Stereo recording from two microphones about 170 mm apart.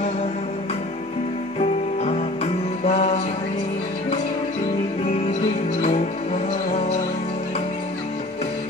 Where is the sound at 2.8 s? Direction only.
40° left (ahead or behind).